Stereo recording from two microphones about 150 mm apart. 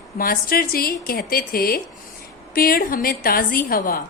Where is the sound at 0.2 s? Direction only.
75° left (ahead or behind).